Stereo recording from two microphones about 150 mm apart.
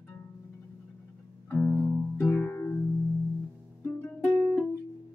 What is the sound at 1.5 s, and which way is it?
Music, 15° left (ahead or behind).